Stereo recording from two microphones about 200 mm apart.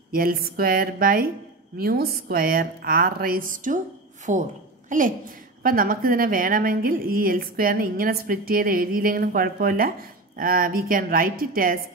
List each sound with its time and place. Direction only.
0.1 s a woman's voice: 45° right (ahead or behind)